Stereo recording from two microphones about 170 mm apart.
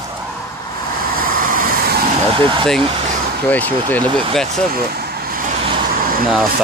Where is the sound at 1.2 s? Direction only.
55° right (ahead or behind).